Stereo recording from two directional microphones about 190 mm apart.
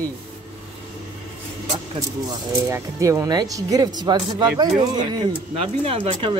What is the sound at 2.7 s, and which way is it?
Speech, 15° right (ahead or behind).